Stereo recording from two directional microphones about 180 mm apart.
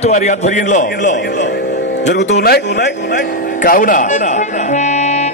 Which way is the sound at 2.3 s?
60° left (ahead or behind).